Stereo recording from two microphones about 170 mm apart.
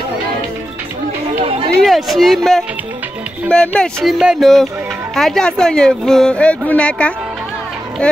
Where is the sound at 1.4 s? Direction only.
35° right (ahead or behind).